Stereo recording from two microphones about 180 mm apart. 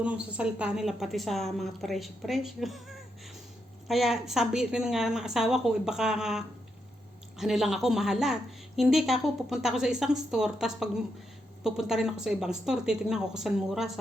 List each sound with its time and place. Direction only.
0.0 s a woman's voice: 5° right (ahead or behind)
3.8 s a woman's voice: centre (ahead or behind)